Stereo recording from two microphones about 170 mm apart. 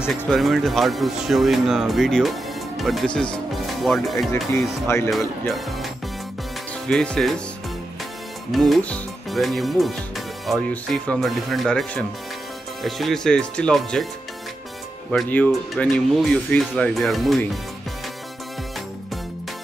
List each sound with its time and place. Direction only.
0.2 s speech: centre (ahead or behind)
4.8 s speech: 15° left (ahead or behind)
5.5 s speech: centre (ahead or behind)
6.9 s speech: 5° left (ahead or behind)
8.5 s speech: centre (ahead or behind)
15.0 s speech: 5° left (ahead or behind)